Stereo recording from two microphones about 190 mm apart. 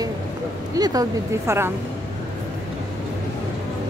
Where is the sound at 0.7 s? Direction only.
20° right (ahead or behind).